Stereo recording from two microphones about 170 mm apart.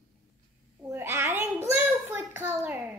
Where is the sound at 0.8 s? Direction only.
15° right (ahead or behind).